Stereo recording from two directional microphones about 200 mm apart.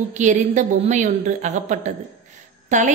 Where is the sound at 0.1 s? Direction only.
35° right (ahead or behind).